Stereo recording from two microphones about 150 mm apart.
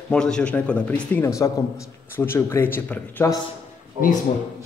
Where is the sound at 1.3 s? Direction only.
20° left (ahead or behind).